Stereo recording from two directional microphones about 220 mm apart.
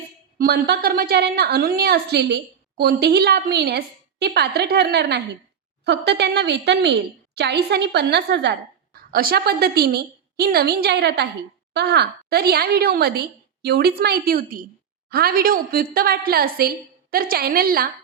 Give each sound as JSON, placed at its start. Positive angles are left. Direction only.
{"t": 0.3, "sound": "a woman's voice", "side_deg": -45}